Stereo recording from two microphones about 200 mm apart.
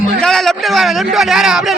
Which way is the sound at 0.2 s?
Centre (ahead or behind).